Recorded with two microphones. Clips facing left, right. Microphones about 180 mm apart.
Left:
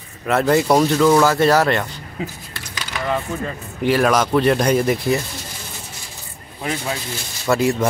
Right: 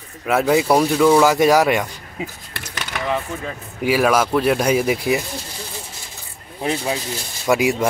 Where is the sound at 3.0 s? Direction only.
Centre (ahead or behind).